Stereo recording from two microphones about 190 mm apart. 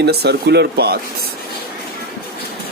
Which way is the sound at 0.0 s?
60° right (ahead or behind).